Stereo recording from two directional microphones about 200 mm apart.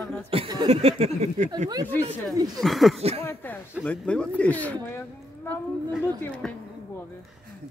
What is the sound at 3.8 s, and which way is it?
A woman's voice, 5° left (ahead or behind).